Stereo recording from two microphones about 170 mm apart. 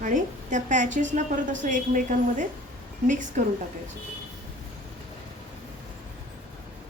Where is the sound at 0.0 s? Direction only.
50° right (ahead or behind).